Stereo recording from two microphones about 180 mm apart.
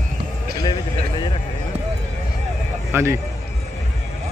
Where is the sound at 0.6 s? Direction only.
25° left (ahead or behind).